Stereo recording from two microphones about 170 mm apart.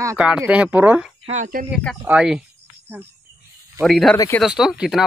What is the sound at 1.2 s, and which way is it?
Speech, 45° right (ahead or behind).